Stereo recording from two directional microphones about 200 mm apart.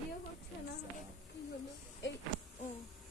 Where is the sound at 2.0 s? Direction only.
65° left (ahead or behind).